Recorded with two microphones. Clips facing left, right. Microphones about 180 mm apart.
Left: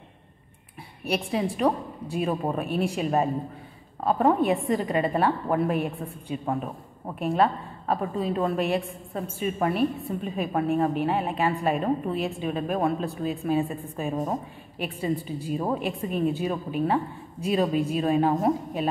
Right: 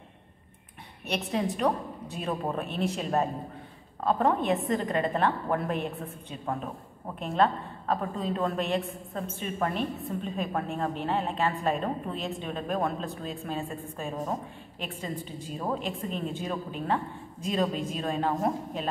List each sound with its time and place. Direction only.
1.0 s a woman's voice: 5° left (ahead or behind)